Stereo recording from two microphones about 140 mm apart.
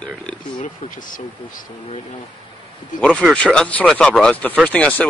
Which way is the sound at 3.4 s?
5° left (ahead or behind).